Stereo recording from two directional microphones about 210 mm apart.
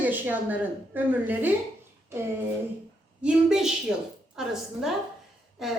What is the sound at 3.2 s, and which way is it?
A woman's voice, centre (ahead or behind).